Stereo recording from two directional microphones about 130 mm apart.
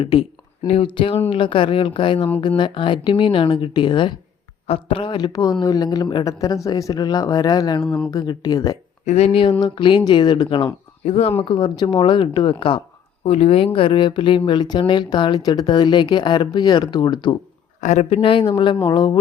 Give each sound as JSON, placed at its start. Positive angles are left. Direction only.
{"t": 0.0, "sound": "speech", "side_deg": 45}
{"t": 7.8, "sound": "speech", "side_deg": 5}
{"t": 8.1, "sound": "speech", "side_deg": 30}
{"t": 9.0, "sound": "speech", "side_deg": 55}
{"t": 11.0, "sound": "speech", "side_deg": 50}
{"t": 11.4, "sound": "speech", "side_deg": 35}
{"t": 17.7, "sound": "speech", "side_deg": 70}
{"t": 18.1, "sound": "speech", "side_deg": 45}